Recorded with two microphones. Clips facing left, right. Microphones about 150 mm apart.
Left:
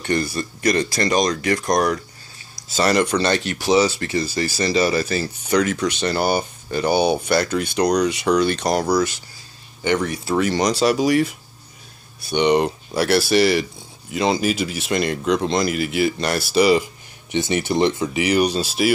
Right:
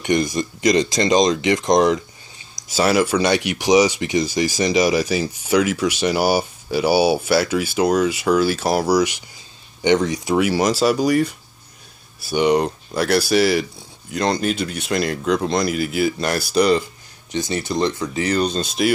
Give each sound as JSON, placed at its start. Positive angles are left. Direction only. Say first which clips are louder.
{"t": 0.0, "sound": "speech", "louder": "right 3 dB", "side_deg": -15}
{"t": 2.7, "sound": "speech", "louder": "right 1 dB", "side_deg": -5}
{"t": 17.3, "sound": "speech", "louder": "left 2 dB", "side_deg": 20}